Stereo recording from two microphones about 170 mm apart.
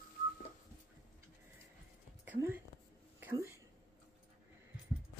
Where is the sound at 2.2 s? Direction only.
10° right (ahead or behind).